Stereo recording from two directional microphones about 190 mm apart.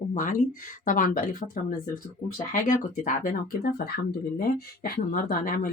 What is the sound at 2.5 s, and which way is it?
Speech, 45° left (ahead or behind).